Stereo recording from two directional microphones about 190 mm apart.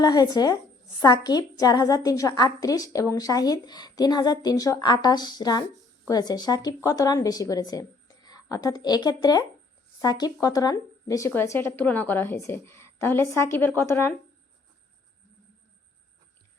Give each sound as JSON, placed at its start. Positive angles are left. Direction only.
{"t": 0.0, "sound": "a woman's voice", "side_deg": 20}